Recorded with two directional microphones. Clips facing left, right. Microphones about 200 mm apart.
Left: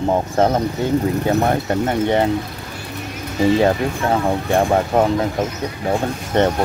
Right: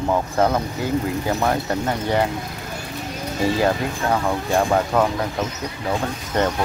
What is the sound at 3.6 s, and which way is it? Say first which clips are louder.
Speech: left 4 dB; 25° left (ahead or behind).